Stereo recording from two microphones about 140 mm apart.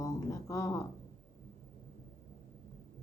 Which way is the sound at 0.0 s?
20° left (ahead or behind).